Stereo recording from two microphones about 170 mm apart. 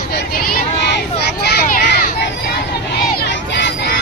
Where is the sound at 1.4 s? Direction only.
75° left (ahead or behind).